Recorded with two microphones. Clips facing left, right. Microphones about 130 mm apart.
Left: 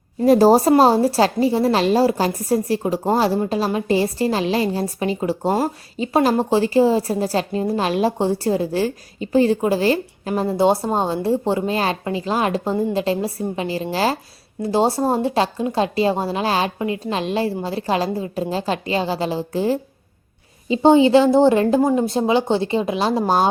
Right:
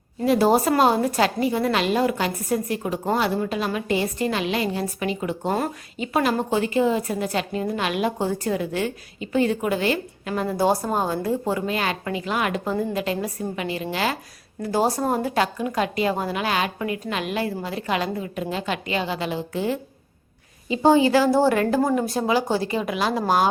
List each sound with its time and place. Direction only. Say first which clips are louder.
0.3 s a woman's voice: left 6 dB; 35° left (ahead or behind)